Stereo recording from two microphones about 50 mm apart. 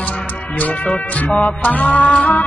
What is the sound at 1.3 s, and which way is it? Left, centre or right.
Music, left.